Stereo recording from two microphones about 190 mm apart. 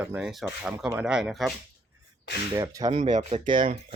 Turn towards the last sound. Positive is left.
turn(degrees=-35)  # may be behind; listen again after turning